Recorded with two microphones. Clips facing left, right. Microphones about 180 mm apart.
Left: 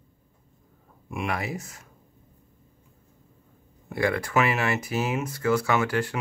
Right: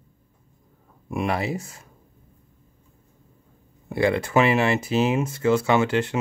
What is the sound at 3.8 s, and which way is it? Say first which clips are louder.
Speech: right 4 dB; 25° right (ahead or behind).